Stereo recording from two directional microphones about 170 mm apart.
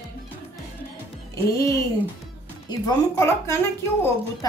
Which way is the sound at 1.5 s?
20° left (ahead or behind).